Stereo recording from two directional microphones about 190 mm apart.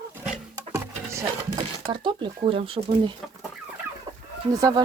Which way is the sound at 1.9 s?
25° right (ahead or behind).